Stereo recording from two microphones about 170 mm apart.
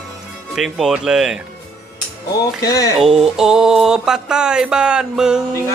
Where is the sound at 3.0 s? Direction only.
5° right (ahead or behind).